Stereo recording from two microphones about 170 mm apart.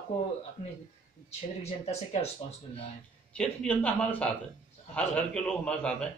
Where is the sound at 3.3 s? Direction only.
5° left (ahead or behind).